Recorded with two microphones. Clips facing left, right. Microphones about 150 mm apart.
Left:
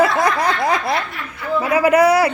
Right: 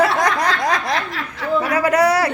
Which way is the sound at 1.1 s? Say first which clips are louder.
Right 1 dB; 90° right.